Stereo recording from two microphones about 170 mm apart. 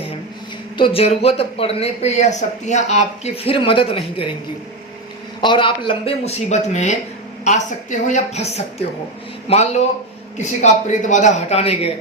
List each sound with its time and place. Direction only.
0.8 s speech: 35° left (ahead or behind)
5.4 s a man's voice: 30° left (ahead or behind)